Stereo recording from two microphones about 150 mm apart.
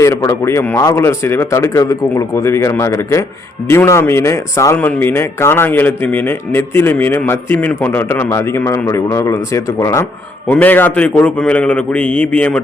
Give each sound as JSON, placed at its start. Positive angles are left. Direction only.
{"t": 0.0, "sound": "a man's voice", "side_deg": 20}